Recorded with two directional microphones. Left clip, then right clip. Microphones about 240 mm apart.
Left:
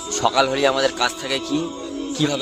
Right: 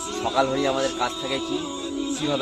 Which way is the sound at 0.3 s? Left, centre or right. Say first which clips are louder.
Left 3 dB; left.